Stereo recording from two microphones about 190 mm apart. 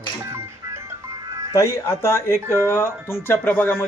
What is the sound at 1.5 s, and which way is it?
Speech, 15° left (ahead or behind).